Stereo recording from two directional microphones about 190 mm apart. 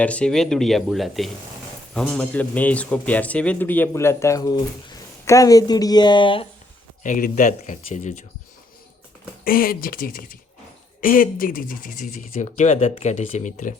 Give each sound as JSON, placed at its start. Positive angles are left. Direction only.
{"t": 0.0, "sound": "a man's voice", "side_deg": 5}
{"t": 7.0, "sound": "speech", "side_deg": 40}
{"t": 9.4, "sound": "speech", "side_deg": 50}